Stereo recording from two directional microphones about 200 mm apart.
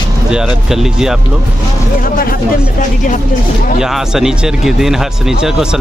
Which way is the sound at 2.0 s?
45° left (ahead or behind).